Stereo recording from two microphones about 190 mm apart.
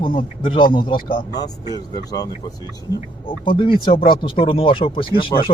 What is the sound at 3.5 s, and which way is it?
Speech, 30° left (ahead or behind).